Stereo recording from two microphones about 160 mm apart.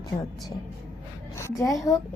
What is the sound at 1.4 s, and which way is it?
Speech, 20° left (ahead or behind).